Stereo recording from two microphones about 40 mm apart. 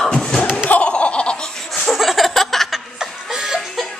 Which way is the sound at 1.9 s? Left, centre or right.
Centre.